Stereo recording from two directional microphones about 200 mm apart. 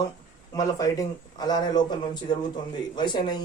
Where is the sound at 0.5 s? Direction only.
15° left (ahead or behind).